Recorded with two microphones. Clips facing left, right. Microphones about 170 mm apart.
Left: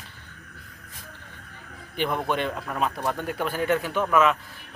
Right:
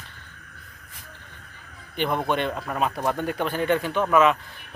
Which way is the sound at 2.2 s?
5° left (ahead or behind).